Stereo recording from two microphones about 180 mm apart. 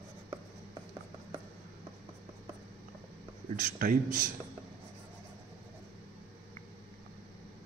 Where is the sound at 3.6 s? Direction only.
50° right (ahead or behind).